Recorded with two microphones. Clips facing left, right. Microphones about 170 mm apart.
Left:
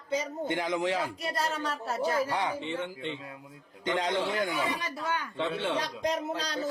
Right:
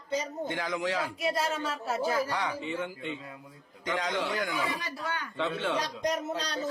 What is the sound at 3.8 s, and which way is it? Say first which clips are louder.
Speech: left 2 dB; 25° left (ahead or behind).